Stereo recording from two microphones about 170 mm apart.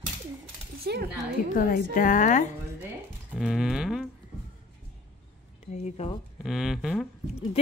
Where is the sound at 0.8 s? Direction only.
65° right (ahead or behind).